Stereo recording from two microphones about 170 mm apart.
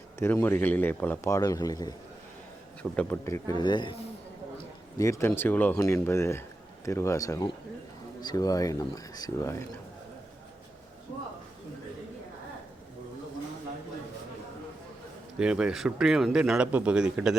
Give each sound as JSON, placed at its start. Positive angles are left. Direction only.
{"t": 0.2, "sound": "speech", "side_deg": 15}
{"t": 2.9, "sound": "speech", "side_deg": 10}
{"t": 4.9, "sound": "speech", "side_deg": 20}
{"t": 15.4, "sound": "speech", "side_deg": -5}